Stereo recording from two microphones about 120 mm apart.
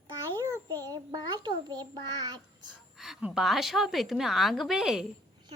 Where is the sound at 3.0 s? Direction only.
5° right (ahead or behind).